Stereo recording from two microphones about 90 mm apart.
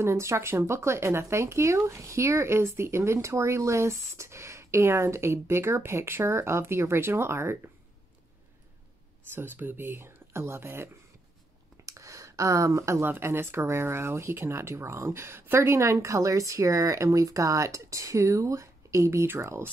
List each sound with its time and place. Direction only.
0.0 s speech: 30° right (ahead or behind)
9.3 s speech: 25° right (ahead or behind)
11.8 s a sound: 35° right (ahead or behind)
13.1 s speech: 25° right (ahead or behind)